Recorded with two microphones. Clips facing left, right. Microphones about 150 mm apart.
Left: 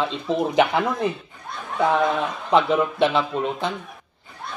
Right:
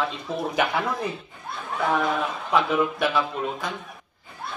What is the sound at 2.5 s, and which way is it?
Speech, 25° left (ahead or behind).